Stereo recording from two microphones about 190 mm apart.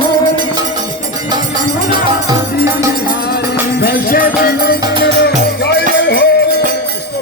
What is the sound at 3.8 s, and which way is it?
Music, 50° left (ahead or behind).